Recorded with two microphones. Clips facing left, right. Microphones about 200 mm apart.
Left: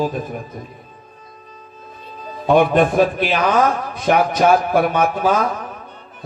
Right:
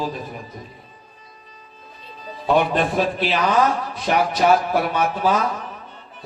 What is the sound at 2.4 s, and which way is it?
A man's voice, 55° left (ahead or behind).